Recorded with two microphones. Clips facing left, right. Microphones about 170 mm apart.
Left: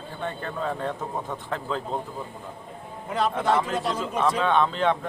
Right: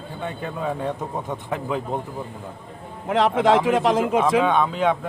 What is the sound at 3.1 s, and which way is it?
Speech, 90° right.